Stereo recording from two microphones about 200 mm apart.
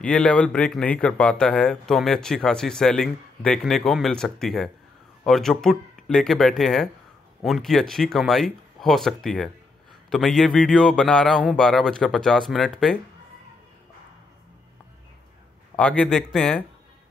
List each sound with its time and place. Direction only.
0.0 s speech: 5° left (ahead or behind)
15.7 s speech: 5° left (ahead or behind)